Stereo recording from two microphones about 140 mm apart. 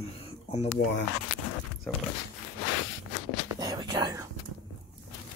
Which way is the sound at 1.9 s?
5° left (ahead or behind).